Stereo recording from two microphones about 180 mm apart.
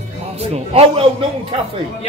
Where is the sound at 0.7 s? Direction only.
30° right (ahead or behind).